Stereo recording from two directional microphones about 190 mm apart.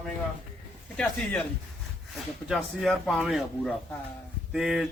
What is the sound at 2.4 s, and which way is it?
Speech, centre (ahead or behind).